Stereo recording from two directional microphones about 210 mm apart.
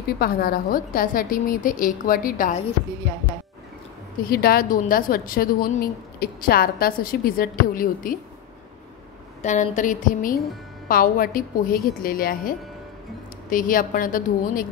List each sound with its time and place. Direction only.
0.2 s a woman's voice: 45° left (ahead or behind)
4.2 s a woman's voice: 45° left (ahead or behind)
9.4 s a woman's voice: 35° left (ahead or behind)